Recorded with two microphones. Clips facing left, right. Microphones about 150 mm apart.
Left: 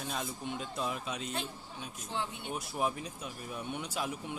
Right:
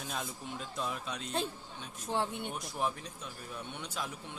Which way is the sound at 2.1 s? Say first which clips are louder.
Right 5 dB; 60° right (ahead or behind).